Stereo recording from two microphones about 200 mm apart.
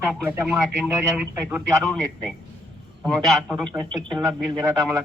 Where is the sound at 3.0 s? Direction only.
5° right (ahead or behind).